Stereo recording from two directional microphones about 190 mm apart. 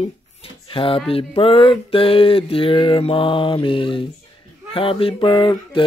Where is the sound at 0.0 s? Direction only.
30° left (ahead or behind).